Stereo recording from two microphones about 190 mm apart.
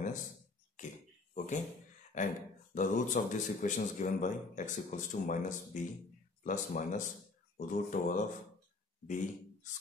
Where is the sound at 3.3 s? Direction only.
40° left (ahead or behind).